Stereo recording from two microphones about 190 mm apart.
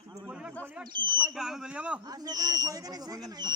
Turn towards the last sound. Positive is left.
turn(degrees=-20)  # may be behind; listen again after turning